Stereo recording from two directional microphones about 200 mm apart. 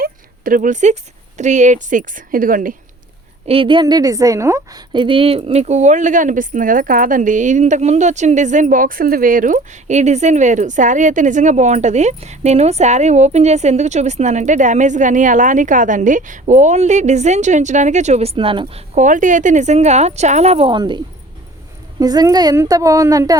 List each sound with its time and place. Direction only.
0.0 s a sound: 45° right (ahead or behind)
1.4 s a woman's voice: 35° right (ahead or behind)
3.4 s a woman's voice: 30° right (ahead or behind)
18.9 s a woman's voice: 40° right (ahead or behind); by 23.4 s 15° right (ahead or behind)